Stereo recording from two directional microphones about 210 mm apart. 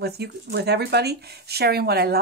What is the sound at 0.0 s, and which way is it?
Speech, 50° right (ahead or behind).